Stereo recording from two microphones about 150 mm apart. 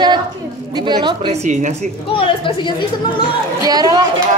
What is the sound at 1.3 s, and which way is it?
Speech, 50° right (ahead or behind).